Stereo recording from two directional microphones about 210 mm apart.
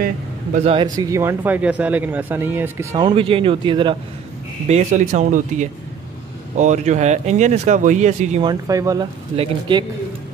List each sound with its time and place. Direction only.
0.7 s speech: 20° right (ahead or behind)
4.6 s speech: 35° right (ahead or behind)
8.5 s a man's voice: 15° right (ahead or behind)